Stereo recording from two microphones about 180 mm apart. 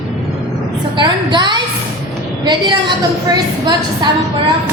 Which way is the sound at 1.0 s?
25° right (ahead or behind).